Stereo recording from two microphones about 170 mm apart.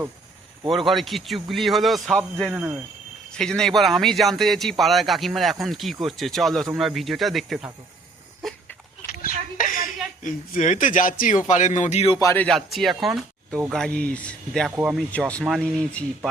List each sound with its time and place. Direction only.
0.9 s speech: centre (ahead or behind)
3.3 s speech: 5° left (ahead or behind)
8.4 s goat: centre (ahead or behind)
9.0 s a sound: 55° left (ahead or behind)
10.2 s speech: 50° left (ahead or behind)
12.2 s a man's voice: 15° left (ahead or behind)
12.5 s speech: centre (ahead or behind)
15.1 s speech: 5° left (ahead or behind)